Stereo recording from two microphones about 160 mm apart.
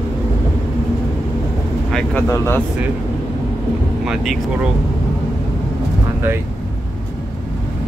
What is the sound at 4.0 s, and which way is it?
Speech, centre (ahead or behind).